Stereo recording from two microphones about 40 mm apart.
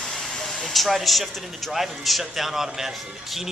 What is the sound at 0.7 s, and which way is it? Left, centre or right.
A man's voice, centre.